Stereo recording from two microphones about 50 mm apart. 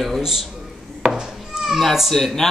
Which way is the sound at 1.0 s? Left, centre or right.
Centre.